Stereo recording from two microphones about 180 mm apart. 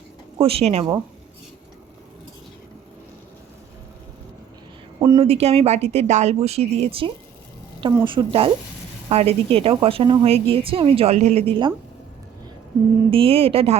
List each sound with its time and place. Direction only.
0.3 s a woman's voice: 30° right (ahead or behind)
4.9 s a sound: 20° right (ahead or behind)
5.2 s a woman's voice: 35° right (ahead or behind)
13.1 s a woman's voice: 30° right (ahead or behind)